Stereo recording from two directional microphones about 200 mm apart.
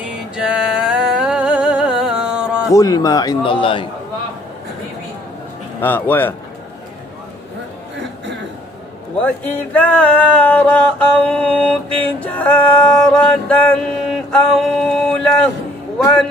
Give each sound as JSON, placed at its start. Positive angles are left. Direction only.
{"t": 0.0, "sound": "music", "side_deg": -5}
{"t": 2.7, "sound": "a man's voice", "side_deg": 15}
{"t": 5.8, "sound": "music", "side_deg": 10}
{"t": 9.2, "sound": "music", "side_deg": 5}
{"t": 13.1, "sound": "mantra", "side_deg": 5}